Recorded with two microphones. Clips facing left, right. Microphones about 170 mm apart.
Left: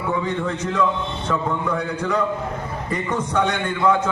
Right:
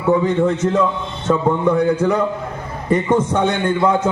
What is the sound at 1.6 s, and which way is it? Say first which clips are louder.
A man's voice: right 9 dB; 20° right (ahead or behind).